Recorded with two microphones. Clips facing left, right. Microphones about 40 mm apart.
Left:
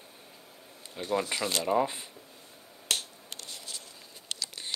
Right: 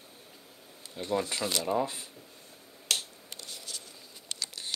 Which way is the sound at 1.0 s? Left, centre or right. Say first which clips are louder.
Left 1 dB; centre.